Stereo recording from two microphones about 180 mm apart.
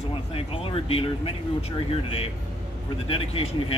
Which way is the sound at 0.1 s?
30° left (ahead or behind).